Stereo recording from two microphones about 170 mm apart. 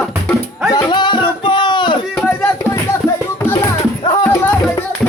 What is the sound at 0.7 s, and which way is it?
Music, 25° left (ahead or behind).